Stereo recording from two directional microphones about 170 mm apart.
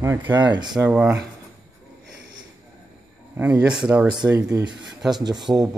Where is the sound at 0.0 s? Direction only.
15° right (ahead or behind).